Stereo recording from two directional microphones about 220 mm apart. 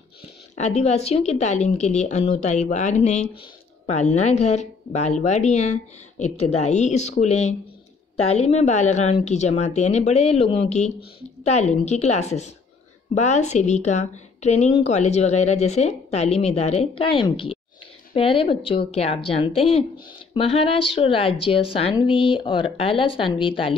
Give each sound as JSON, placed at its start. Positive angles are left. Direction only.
{"t": 0.6, "sound": "speech", "side_deg": 30}